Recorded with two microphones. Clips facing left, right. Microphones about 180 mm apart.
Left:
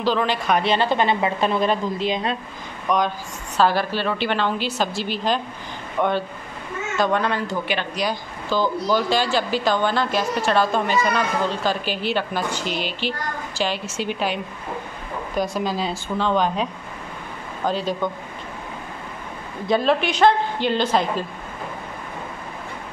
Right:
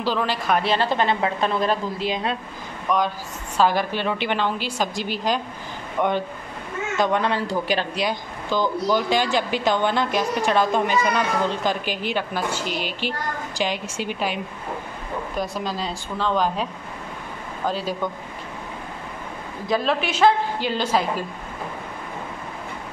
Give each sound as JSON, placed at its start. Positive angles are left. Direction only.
{"t": 0.0, "sound": "a woman's voice", "side_deg": -5}
{"t": 3.5, "sound": "speech", "side_deg": -15}
{"t": 8.0, "sound": "a woman's voice", "side_deg": -20}
{"t": 17.6, "sound": "a woman's voice", "side_deg": -5}
{"t": 19.6, "sound": "a woman's voice", "side_deg": 0}